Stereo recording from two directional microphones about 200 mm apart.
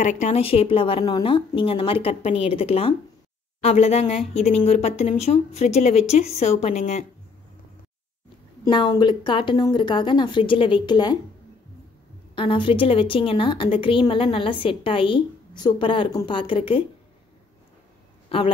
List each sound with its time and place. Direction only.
0.0 s a woman's voice: 35° left (ahead or behind)
8.6 s a woman's voice: 25° left (ahead or behind)
12.4 s a woman's voice: 25° left (ahead or behind)
18.3 s a woman's voice: 30° left (ahead or behind)